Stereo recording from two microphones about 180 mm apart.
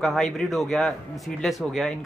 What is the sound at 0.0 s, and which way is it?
Speech, centre (ahead or behind).